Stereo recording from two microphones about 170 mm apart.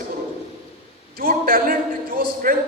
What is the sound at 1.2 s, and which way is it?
A man's voice, 60° right (ahead or behind).